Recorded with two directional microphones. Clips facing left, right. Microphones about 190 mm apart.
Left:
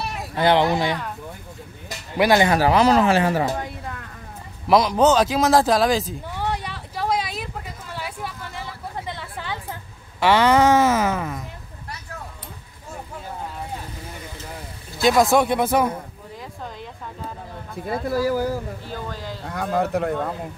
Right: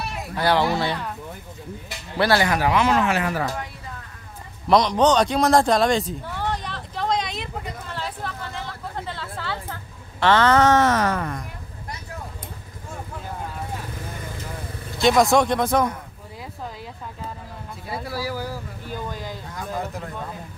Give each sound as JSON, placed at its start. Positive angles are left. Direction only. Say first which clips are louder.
{"t": 0.4, "sound": "speech", "louder": "left 3 dB", "side_deg": 20}
{"t": 2.1, "sound": "speech", "louder": "left 3 dB", "side_deg": 15}
{"t": 4.6, "sound": "a man's voice", "louder": "left 1 dB", "side_deg": 5}
{"t": 6.2, "sound": "vehicle", "louder": "left 1 dB", "side_deg": 10}
{"t": 10.2, "sound": "speech", "louder": "left 1 dB", "side_deg": 10}
{"t": 15.0, "sound": "a man's voice", "louder": "even", "side_deg": 0}
{"t": 18.0, "sound": "speech", "louder": "left 9 dB", "side_deg": 50}
{"t": 18.9, "sound": "speech", "louder": "even", "side_deg": -15}
{"t": 19.5, "sound": "speech", "louder": "left 9 dB", "side_deg": 65}